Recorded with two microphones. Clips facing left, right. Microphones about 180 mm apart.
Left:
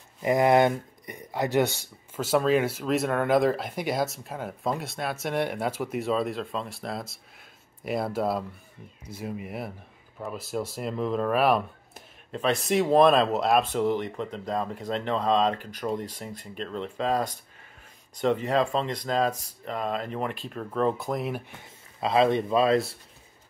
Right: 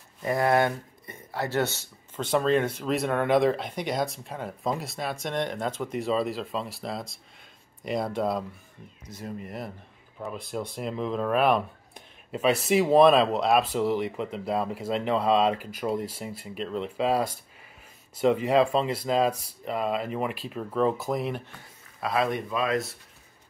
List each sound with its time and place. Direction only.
0.2 s speech: 20° left (ahead or behind); by 21.4 s centre (ahead or behind)
22.0 s speech: 25° left (ahead or behind)